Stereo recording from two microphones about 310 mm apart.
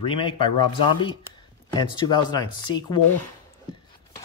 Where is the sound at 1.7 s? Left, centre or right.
Centre.